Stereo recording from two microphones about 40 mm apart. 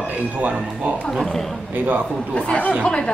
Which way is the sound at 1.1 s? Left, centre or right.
Centre.